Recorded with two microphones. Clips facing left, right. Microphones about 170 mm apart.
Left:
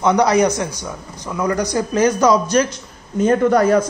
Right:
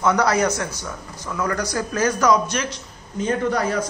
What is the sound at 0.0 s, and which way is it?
Speech, 20° left (ahead or behind).